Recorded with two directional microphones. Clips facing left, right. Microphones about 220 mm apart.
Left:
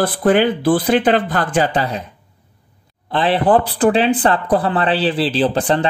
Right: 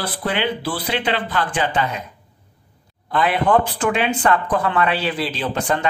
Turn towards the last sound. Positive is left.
turn(degrees=35)  # may be behind; listen again after turning